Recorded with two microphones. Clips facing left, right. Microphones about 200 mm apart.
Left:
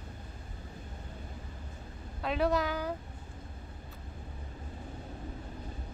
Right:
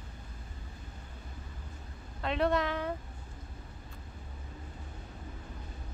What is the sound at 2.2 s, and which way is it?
Speech, centre (ahead or behind).